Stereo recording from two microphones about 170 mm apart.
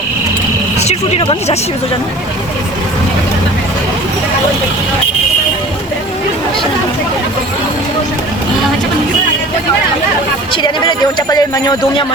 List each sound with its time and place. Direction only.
0.8 s speech: 40° left (ahead or behind)
10.5 s speech: 25° left (ahead or behind)